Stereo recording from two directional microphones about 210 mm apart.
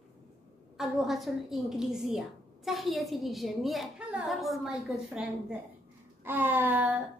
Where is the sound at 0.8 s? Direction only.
Centre (ahead or behind).